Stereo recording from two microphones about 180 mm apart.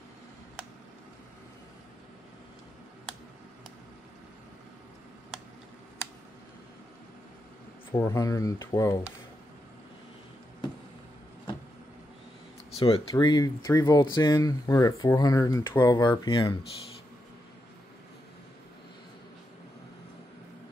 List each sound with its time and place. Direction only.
7.9 s speech: 20° left (ahead or behind)
12.7 s speech: 30° left (ahead or behind)